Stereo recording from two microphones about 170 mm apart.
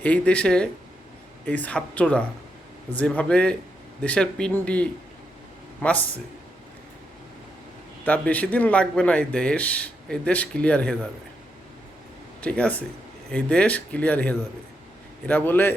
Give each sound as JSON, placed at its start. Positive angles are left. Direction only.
{"t": 0.0, "sound": "speech", "side_deg": 5}
{"t": 8.0, "sound": "speech", "side_deg": 10}
{"t": 12.4, "sound": "speech", "side_deg": 5}